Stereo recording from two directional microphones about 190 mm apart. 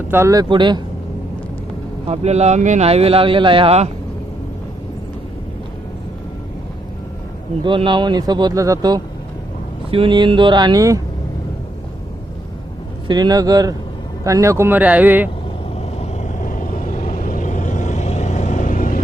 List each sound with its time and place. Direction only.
0.1 s speech: 15° right (ahead or behind)
2.0 s speech: 35° right (ahead or behind)
7.6 s speech: 25° right (ahead or behind)
13.1 s speech: 20° right (ahead or behind)
15.7 s vehicle: 35° left (ahead or behind)